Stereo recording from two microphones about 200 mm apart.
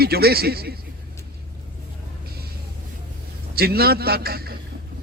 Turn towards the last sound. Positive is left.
turn(degrees=-50)  # may be behind; listen again after turning